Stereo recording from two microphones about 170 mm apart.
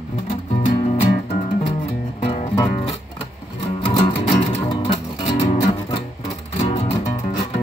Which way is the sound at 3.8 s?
30° left (ahead or behind).